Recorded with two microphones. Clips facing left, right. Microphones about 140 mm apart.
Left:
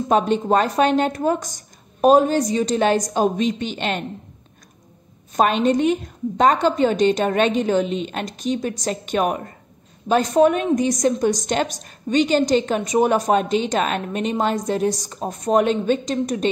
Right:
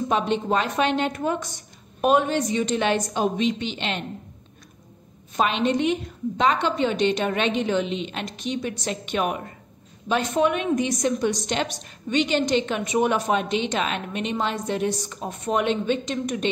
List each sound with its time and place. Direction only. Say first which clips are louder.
0.1 s a woman's voice: left 6 dB; 45° left (ahead or behind)
5.3 s a woman's voice: left 5 dB; 45° left (ahead or behind)